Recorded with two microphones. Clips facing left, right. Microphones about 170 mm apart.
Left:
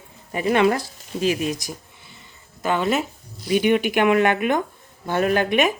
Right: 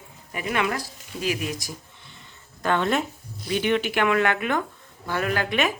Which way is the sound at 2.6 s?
5° left (ahead or behind).